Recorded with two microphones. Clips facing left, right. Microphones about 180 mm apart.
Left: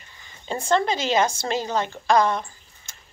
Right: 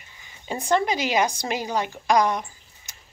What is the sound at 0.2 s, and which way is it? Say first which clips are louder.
A woman's voice: left 1 dB; 15° right (ahead or behind).